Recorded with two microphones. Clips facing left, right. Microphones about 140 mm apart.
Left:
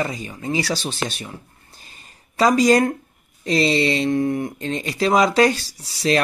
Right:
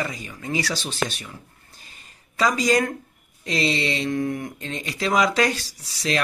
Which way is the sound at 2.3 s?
35° left (ahead or behind).